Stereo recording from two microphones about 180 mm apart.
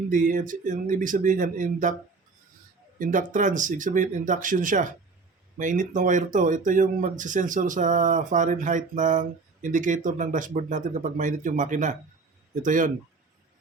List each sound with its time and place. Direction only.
0.1 s speech: 45° right (ahead or behind)
3.0 s speech: 45° right (ahead or behind)